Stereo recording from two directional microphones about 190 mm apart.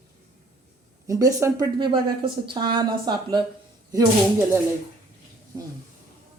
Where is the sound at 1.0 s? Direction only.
15° right (ahead or behind).